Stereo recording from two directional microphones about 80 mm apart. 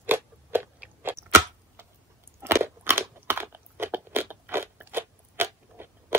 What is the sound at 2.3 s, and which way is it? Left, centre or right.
Crunch, right.